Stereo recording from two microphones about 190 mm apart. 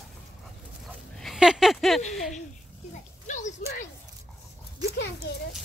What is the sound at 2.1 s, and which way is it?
Speech, centre (ahead or behind).